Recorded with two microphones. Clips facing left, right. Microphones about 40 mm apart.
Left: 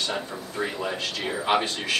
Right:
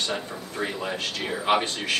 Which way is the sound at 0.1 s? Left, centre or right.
Centre.